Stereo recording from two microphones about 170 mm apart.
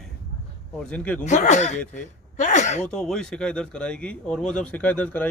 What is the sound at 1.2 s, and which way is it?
Speech, 45° left (ahead or behind).